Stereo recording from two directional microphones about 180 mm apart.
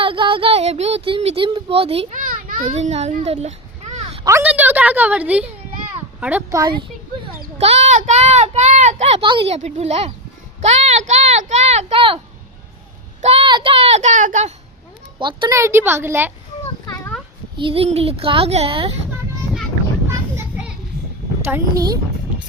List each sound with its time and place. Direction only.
0.0 s a sound: 30° right (ahead or behind)
1.5 s speech: 30° right (ahead or behind)
2.1 s a child's voice: 50° right (ahead or behind)
4.2 s a woman's voice: 15° right (ahead or behind)
7.6 s speech: 35° right (ahead or behind)
13.2 s speech: 30° right (ahead or behind)
15.2 s a woman's voice: 25° right (ahead or behind)
17.6 s speech: 30° right (ahead or behind)
20.1 s children playing: 15° right (ahead or behind)
21.4 s a woman's voice: 15° right (ahead or behind)